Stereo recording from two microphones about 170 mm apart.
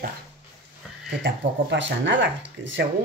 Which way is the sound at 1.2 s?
90° right.